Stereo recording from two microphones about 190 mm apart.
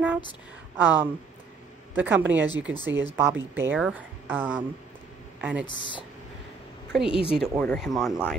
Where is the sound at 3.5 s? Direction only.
10° right (ahead or behind).